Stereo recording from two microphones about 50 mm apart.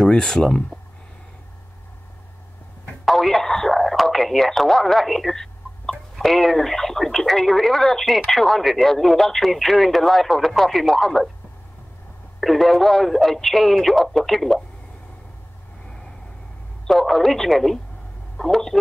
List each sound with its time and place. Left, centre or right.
0.0 s speech: centre
3.1 s speech: centre
12.4 s speech: centre
16.8 s speech: centre